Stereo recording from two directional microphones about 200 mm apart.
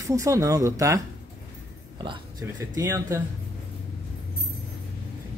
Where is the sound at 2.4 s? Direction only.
10° right (ahead or behind).